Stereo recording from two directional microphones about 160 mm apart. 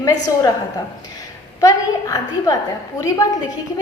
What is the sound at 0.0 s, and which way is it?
Speech, 20° left (ahead or behind).